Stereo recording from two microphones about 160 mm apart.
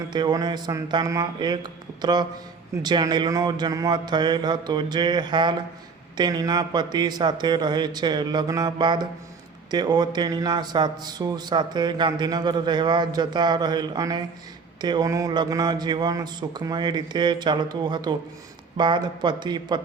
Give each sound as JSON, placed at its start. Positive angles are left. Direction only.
{"t": 0.1, "sound": "a man's voice", "side_deg": -25}